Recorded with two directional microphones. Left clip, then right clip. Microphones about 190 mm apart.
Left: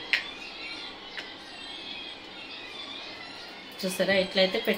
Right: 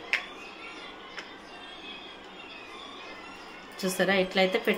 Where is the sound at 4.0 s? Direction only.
35° right (ahead or behind).